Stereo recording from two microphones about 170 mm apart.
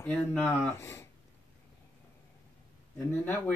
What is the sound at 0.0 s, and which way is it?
Speech, 5° left (ahead or behind).